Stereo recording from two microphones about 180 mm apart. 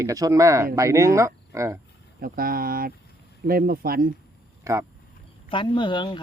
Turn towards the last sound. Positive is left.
turn(degrees=25)  # may be behind; listen again after turning